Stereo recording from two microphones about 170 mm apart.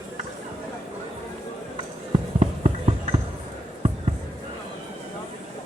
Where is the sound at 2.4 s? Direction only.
40° right (ahead or behind).